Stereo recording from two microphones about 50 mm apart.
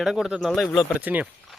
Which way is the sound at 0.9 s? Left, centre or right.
Right.